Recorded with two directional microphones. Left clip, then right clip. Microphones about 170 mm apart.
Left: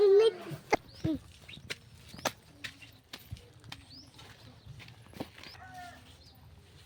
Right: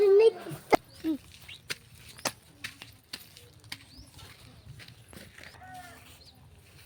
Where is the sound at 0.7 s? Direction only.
30° right (ahead or behind).